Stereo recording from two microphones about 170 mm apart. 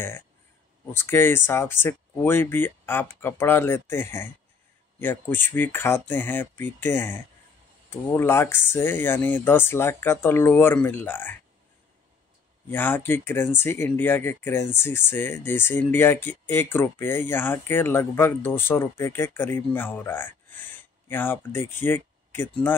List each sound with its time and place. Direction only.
0.9 s speech: 15° left (ahead or behind)
12.6 s speech: 10° left (ahead or behind)